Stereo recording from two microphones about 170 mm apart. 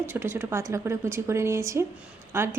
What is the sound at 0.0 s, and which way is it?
A woman's voice, 15° right (ahead or behind).